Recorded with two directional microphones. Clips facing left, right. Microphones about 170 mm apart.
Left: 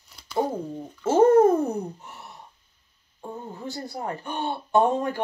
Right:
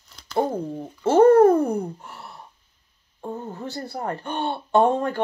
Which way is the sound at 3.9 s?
55° right (ahead or behind).